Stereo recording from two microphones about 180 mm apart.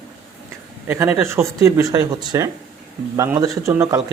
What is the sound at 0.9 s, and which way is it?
A man's voice, 10° right (ahead or behind).